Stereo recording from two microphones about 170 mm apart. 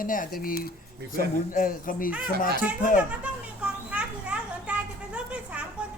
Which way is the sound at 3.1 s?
5° right (ahead or behind).